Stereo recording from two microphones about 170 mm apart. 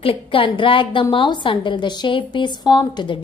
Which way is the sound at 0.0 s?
30° left (ahead or behind).